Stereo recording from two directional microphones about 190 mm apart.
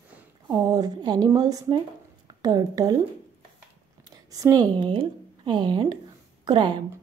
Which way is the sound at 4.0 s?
20° right (ahead or behind).